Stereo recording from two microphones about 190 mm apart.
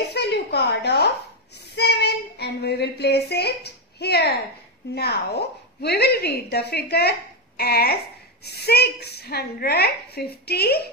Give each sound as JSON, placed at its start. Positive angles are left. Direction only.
{"t": 0.1, "sound": "a sound", "side_deg": 60}
{"t": 1.8, "sound": "child singing", "side_deg": 60}
{"t": 4.9, "sound": "a woman's voice", "side_deg": 60}